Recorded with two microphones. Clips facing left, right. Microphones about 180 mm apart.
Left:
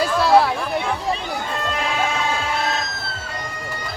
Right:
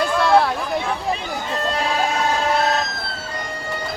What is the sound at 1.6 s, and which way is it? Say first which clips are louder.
Music: right 3 dB; 35° right (ahead or behind).